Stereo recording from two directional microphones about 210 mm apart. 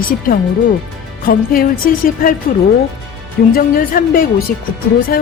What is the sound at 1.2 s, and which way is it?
Music, 45° left (ahead or behind).